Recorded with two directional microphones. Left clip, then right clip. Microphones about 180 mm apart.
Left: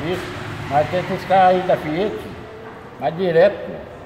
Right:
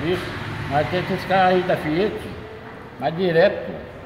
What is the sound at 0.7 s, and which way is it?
A man's voice, centre (ahead or behind).